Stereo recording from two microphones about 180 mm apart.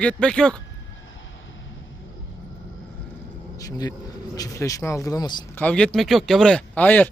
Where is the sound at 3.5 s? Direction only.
20° left (ahead or behind).